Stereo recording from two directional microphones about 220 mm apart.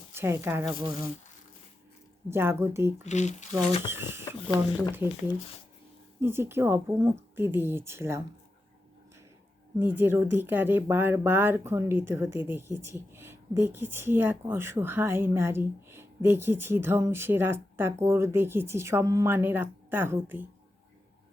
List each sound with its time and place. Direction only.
0.1 s speech: 10° right (ahead or behind)
2.3 s speech: 10° right (ahead or behind)
3.0 s speech: 30° left (ahead or behind)
3.8 s speech: 10° right (ahead or behind)
6.1 s speech: 10° right (ahead or behind)
9.7 s speech: 10° right (ahead or behind)